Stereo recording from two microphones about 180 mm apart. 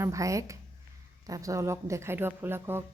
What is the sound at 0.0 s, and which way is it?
A woman's voice, 20° right (ahead or behind).